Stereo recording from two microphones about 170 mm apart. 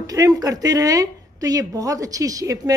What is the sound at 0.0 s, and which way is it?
A woman's voice, 20° right (ahead or behind).